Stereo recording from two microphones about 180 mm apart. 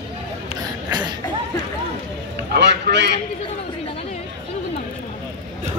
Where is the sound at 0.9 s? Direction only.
25° right (ahead or behind).